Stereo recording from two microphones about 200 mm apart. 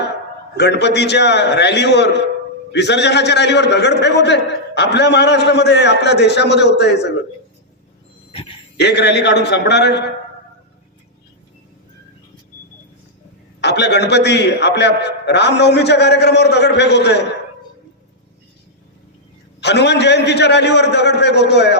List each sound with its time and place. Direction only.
0.5 s a man's voice: 55° left (ahead or behind)
8.8 s a man's voice: 55° left (ahead or behind)
13.6 s a man's voice: 60° left (ahead or behind)
19.6 s a man's voice: 60° left (ahead or behind)